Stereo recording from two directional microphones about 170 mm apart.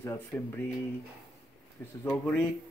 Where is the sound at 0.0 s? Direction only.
10° left (ahead or behind).